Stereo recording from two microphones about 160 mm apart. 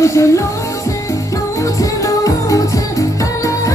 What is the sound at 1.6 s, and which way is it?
Music, 20° left (ahead or behind).